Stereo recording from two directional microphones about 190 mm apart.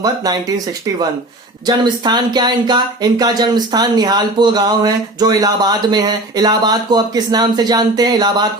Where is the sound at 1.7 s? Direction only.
20° right (ahead or behind).